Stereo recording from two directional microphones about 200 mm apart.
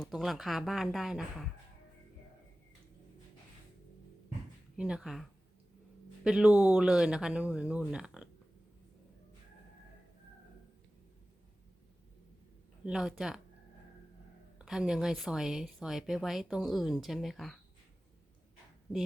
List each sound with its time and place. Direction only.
0.0 s speech: centre (ahead or behind)
4.8 s speech: 5° right (ahead or behind)
6.2 s speech: 5° right (ahead or behind)
12.8 s speech: 5° right (ahead or behind)
14.6 s speech: centre (ahead or behind)